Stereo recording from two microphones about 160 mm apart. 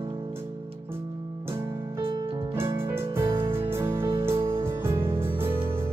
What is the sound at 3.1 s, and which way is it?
Music, 15° right (ahead or behind).